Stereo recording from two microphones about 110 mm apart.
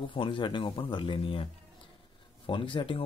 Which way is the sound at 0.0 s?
50° left (ahead or behind).